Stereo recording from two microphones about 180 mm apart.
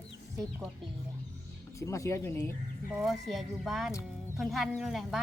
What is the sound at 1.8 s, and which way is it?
Speech, 15° left (ahead or behind).